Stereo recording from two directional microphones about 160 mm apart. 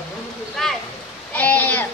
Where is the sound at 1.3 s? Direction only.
10° left (ahead or behind).